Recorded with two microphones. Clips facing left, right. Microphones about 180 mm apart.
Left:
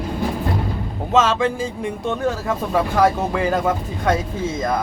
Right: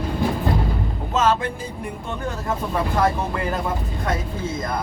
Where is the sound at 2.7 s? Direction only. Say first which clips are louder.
Left 4 dB; 90° left.